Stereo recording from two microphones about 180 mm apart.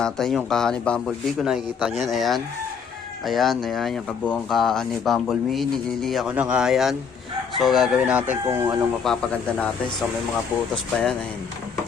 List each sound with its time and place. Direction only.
0.0 s speech: centre (ahead or behind); by 8.8 s 15° right (ahead or behind)
9.0 s a man's voice: 5° left (ahead or behind)
10.9 s speech: centre (ahead or behind)